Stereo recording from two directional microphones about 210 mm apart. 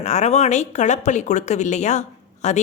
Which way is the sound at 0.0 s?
35° left (ahead or behind).